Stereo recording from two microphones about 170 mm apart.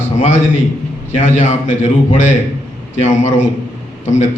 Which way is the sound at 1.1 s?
45° left (ahead or behind).